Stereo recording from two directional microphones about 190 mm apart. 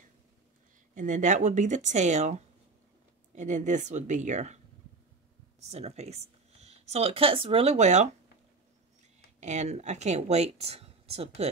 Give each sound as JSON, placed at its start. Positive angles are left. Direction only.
{"t": 0.9, "sound": "speech", "side_deg": -40}
{"t": 5.6, "sound": "speech", "side_deg": -35}
{"t": 9.4, "sound": "speech", "side_deg": -40}